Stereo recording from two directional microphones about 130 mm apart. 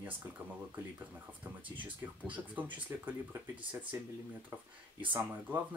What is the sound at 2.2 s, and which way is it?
Speech, 10° right (ahead or behind).